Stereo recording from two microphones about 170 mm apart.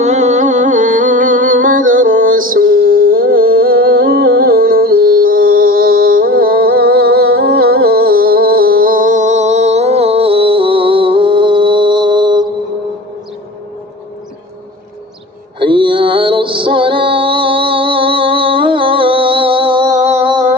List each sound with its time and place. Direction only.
0.0 s music: 45° right (ahead or behind); by 12.5 s 25° right (ahead or behind)
15.5 s music: 30° right (ahead or behind)
19.9 s music: 40° right (ahead or behind)